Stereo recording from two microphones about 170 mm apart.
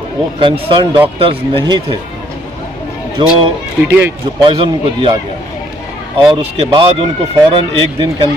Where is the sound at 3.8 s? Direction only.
10° right (ahead or behind).